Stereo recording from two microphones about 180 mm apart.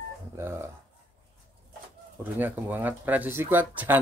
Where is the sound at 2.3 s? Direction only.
10° right (ahead or behind).